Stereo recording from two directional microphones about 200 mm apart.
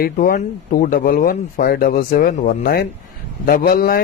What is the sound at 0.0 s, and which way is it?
Speech, 45° left (ahead or behind).